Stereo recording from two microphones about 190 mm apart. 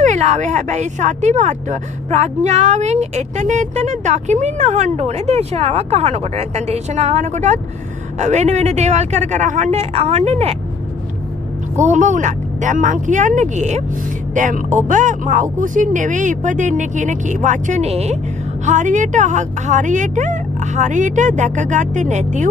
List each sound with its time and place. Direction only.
0.0 s speech: 40° right (ahead or behind)
11.7 s speech: 40° right (ahead or behind)